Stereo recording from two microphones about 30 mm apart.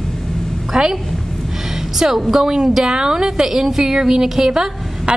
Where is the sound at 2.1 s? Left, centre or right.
Centre.